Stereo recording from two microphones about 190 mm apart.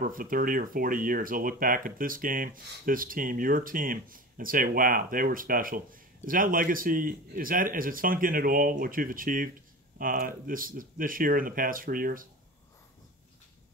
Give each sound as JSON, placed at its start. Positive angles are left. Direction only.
{"t": 0.0, "sound": "speech", "side_deg": -50}